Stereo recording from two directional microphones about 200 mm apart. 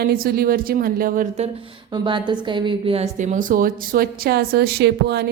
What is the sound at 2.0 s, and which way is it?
Speech, 25° right (ahead or behind).